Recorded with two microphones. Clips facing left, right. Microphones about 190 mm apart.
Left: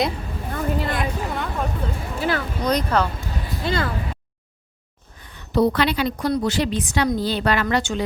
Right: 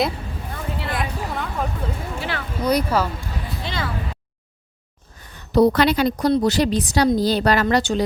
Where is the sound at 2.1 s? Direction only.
40° left (ahead or behind).